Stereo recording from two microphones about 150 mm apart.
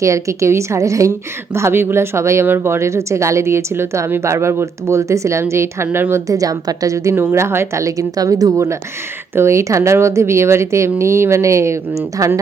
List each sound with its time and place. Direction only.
0.0 s speech: 20° right (ahead or behind)